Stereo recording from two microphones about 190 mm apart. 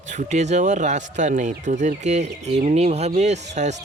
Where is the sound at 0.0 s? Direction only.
40° right (ahead or behind).